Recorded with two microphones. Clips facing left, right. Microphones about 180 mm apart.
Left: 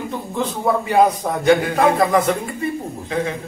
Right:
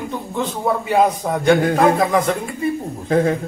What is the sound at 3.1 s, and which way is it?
Speech, 45° right (ahead or behind).